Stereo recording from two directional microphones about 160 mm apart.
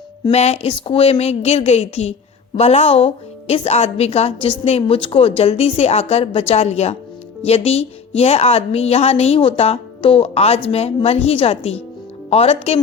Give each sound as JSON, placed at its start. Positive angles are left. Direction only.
{"t": 0.3, "sound": "a woman's voice", "side_deg": 40}